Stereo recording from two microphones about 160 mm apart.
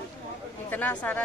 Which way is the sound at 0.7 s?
10° left (ahead or behind).